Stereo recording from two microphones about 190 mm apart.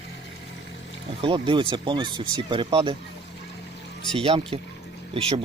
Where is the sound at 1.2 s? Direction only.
25° right (ahead or behind).